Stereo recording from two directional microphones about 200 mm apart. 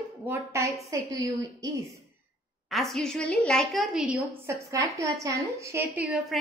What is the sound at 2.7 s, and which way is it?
A woman's voice, centre (ahead or behind).